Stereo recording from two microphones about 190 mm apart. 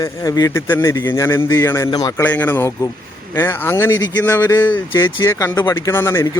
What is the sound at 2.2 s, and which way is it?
Speech, 10° left (ahead or behind).